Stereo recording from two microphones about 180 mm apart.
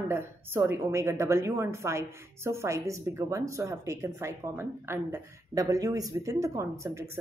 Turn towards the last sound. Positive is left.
turn(degrees=-15)  # may be behind; listen again after turning